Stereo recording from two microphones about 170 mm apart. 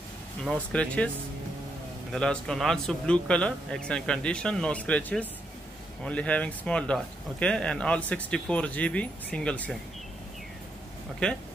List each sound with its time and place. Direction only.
0.5 s speech: 5° left (ahead or behind)
2.1 s speech: 5° left (ahead or behind)